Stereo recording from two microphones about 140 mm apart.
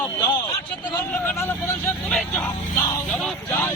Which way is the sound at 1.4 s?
20° left (ahead or behind).